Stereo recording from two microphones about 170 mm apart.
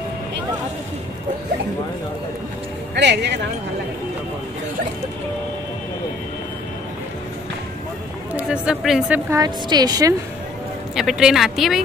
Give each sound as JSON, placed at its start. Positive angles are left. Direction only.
{"t": 2.9, "sound": "speech", "side_deg": -90}
{"t": 8.4, "sound": "a woman's voice", "side_deg": -5}
{"t": 9.3, "sound": "a woman's voice", "side_deg": -20}
{"t": 11.0, "sound": "a woman's voice", "side_deg": -5}